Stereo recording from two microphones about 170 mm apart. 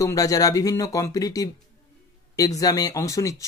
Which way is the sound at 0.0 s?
20° left (ahead or behind).